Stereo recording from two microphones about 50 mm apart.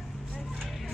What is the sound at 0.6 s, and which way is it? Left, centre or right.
Music, centre.